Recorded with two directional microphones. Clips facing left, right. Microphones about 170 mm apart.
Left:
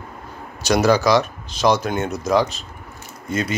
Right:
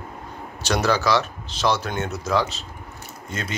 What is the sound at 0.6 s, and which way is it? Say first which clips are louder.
Speech: left 5 dB; 10° left (ahead or behind).